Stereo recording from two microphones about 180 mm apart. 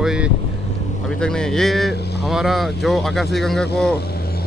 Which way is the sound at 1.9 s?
65° left (ahead or behind).